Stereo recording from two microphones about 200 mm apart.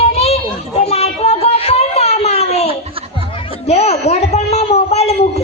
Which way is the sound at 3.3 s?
30° left (ahead or behind).